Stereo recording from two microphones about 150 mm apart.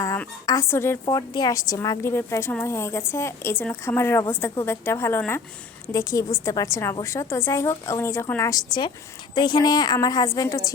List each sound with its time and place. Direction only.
0.4 s a woman's voice: 20° left (ahead or behind)
1.0 s a woman's voice: 30° left (ahead or behind)